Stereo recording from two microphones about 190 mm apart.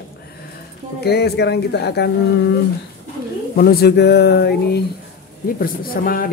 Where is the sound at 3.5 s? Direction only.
55° left (ahead or behind).